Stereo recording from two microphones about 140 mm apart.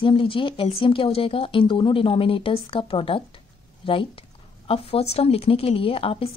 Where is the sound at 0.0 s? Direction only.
40° left (ahead or behind).